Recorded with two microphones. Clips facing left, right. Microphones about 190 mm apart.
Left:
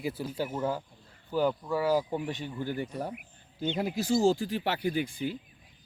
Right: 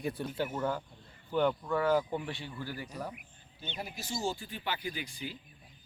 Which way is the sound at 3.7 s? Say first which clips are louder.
Left 11 dB; 80° left.